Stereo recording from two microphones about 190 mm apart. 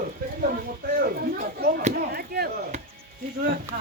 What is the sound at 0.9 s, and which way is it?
Speech, 50° right (ahead or behind).